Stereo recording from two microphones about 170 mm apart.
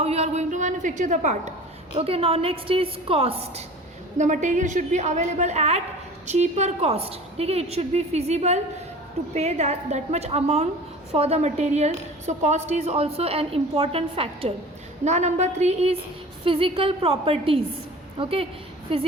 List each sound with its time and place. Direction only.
0.0 s a sound: 35° right (ahead or behind)
2.0 s a woman's voice: 35° right (ahead or behind)
4.2 s a woman's voice: 45° right (ahead or behind)